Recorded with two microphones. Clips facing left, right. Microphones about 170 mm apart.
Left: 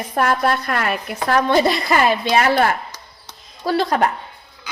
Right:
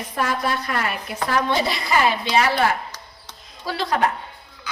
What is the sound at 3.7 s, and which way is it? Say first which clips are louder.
Speech: left 10 dB; 50° left (ahead or behind).